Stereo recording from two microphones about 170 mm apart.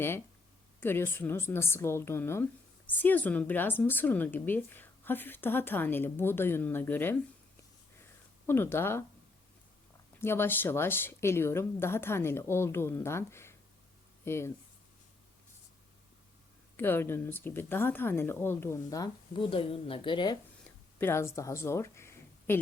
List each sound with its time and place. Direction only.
0.8 s a woman's voice: 10° left (ahead or behind)
8.4 s a woman's voice: 15° left (ahead or behind)
10.2 s a woman's voice: 15° left (ahead or behind)
16.7 s a woman's voice: 10° left (ahead or behind)
19.3 s a woman's voice: 30° left (ahead or behind)
21.0 s speech: 15° left (ahead or behind)